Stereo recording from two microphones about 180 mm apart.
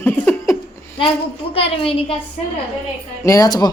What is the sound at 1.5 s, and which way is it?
Speech, 30° left (ahead or behind).